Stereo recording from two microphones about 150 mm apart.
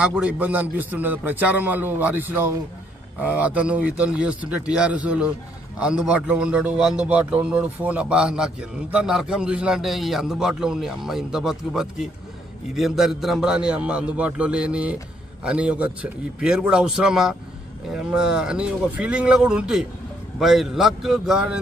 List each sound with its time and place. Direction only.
0.0 s a man's voice: 5° right (ahead or behind)